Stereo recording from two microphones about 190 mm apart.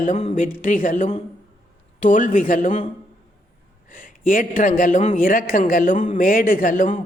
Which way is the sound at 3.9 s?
45° left (ahead or behind).